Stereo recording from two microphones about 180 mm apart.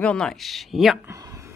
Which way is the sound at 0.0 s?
5° left (ahead or behind).